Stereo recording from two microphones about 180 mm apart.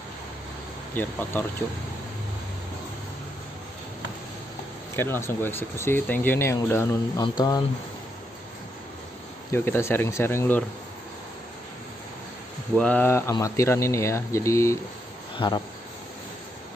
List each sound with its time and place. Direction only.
1.0 s speech: 10° left (ahead or behind)
4.9 s speech: 15° left (ahead or behind)
9.5 s speech: 15° left (ahead or behind)
12.7 s speech: 5° left (ahead or behind)
15.3 s speech: 25° left (ahead or behind)